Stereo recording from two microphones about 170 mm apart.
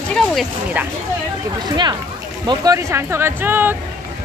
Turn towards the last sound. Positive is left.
turn(degrees=-10)  # may be behind; listen again after turning